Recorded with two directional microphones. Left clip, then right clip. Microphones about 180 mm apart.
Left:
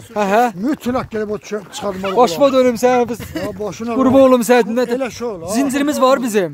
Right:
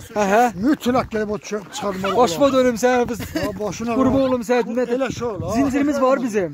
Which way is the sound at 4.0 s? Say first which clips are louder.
Left 9 dB; 55° left (ahead or behind).